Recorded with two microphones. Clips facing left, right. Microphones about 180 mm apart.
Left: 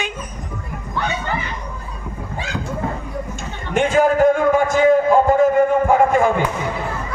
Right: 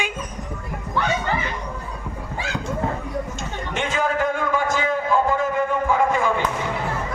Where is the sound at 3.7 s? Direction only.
50° left (ahead or behind).